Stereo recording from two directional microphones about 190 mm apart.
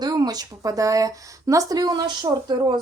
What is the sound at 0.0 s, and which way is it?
Speech, 20° right (ahead or behind).